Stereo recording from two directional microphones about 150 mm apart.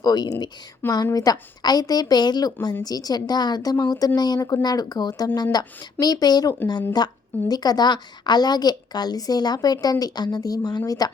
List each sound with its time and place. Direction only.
0.0 s a woman's voice: 25° left (ahead or behind)